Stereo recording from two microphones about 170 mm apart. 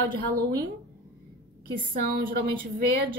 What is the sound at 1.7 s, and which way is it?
A woman's voice, 55° right (ahead or behind).